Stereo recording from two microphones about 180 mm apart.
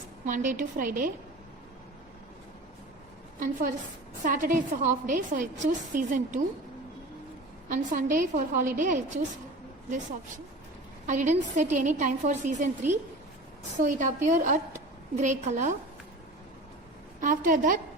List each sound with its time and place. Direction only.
0.3 s a woman's voice: 45° right (ahead or behind)
4.2 s a woman's voice: 50° right (ahead or behind)
7.7 s a woman's voice: 45° right (ahead or behind)
17.2 s a woman's voice: 45° right (ahead or behind)